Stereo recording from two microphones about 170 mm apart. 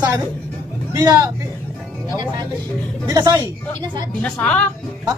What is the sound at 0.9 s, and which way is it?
Speech, 20° right (ahead or behind).